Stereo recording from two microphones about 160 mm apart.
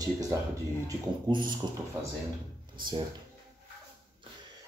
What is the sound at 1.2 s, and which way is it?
Speech, 30° right (ahead or behind).